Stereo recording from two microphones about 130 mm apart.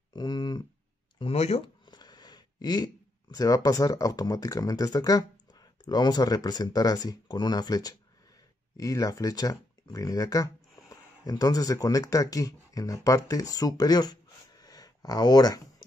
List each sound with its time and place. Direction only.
0.1 s a sound: 30° left (ahead or behind)
1.2 s speech: 50° left (ahead or behind)
1.9 s speech: 35° left (ahead or behind)